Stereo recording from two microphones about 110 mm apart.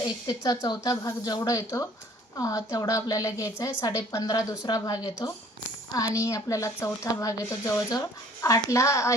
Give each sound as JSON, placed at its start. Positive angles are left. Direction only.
{"t": 0.3, "sound": "a woman's voice", "side_deg": 35}